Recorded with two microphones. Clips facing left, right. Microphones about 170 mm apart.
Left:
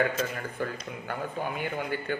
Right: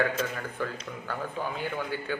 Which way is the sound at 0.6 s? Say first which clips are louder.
Left 1 dB; 50° left (ahead or behind).